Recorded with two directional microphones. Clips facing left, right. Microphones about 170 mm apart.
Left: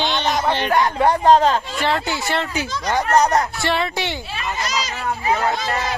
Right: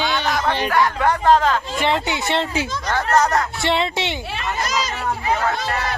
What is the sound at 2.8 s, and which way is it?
Speech, 15° left (ahead or behind).